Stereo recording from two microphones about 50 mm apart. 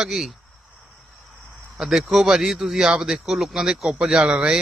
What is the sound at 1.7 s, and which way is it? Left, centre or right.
A man's voice, centre.